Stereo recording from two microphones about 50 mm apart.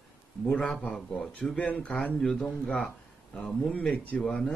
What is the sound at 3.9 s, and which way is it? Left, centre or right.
Speech, left.